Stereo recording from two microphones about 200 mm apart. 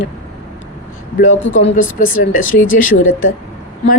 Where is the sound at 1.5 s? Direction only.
35° left (ahead or behind).